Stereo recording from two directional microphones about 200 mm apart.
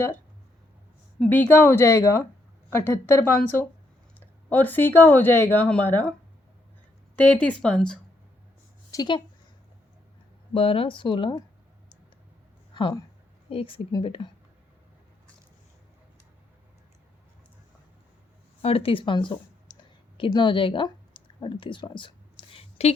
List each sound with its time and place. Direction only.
1.2 s speech: 10° left (ahead or behind)
7.2 s speech: 5° left (ahead or behind)
8.9 s speech: 20° left (ahead or behind)
10.5 s speech: 25° left (ahead or behind)
12.7 s speech: 20° left (ahead or behind)
18.6 s speech: 30° left (ahead or behind)
20.1 s a sound: 25° left (ahead or behind)